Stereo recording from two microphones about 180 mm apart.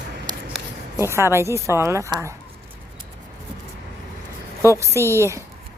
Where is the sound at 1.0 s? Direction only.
15° right (ahead or behind).